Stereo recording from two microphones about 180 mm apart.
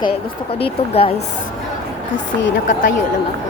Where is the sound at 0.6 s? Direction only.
30° left (ahead or behind).